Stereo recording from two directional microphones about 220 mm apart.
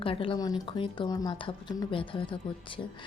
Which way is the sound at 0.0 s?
25° left (ahead or behind).